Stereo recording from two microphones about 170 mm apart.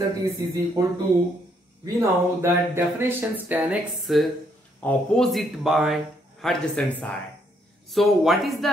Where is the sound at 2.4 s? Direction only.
15° right (ahead or behind).